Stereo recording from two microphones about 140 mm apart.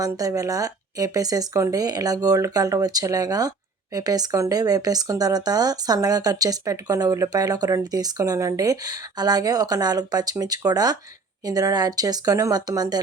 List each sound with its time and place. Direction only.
0.0 s speech: 25° right (ahead or behind)